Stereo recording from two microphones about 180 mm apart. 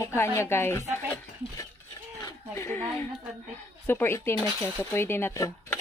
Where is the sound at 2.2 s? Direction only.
15° left (ahead or behind).